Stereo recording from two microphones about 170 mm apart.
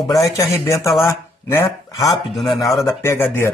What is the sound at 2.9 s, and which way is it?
Speech, 15° left (ahead or behind).